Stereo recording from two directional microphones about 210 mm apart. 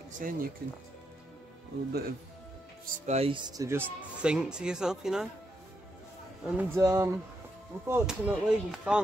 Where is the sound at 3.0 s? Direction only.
30° right (ahead or behind); by 5.2 s 5° right (ahead or behind).